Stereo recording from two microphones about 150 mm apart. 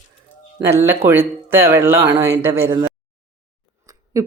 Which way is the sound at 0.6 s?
15° right (ahead or behind).